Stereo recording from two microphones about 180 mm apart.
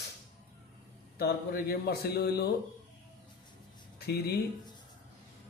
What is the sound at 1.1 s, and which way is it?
A man's voice, 60° left (ahead or behind).